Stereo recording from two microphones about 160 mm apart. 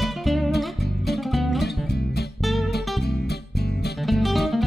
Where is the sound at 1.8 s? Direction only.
90° left.